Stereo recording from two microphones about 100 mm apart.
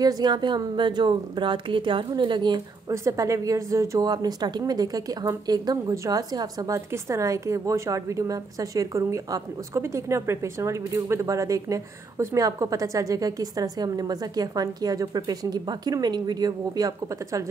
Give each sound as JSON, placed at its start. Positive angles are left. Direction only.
{"t": 0.0, "sound": "a woman's voice", "side_deg": -40}
{"t": 2.9, "sound": "a woman's voice", "side_deg": -30}